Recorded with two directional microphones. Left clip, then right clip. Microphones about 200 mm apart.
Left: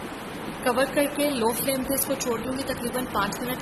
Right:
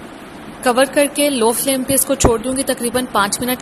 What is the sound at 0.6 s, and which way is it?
A woman's voice, 30° right (ahead or behind).